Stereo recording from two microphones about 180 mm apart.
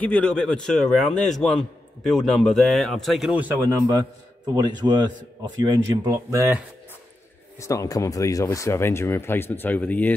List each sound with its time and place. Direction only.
0.0 s a man's voice: 5° left (ahead or behind); by 6.6 s 15° right (ahead or behind)
7.5 s speech: 15° left (ahead or behind)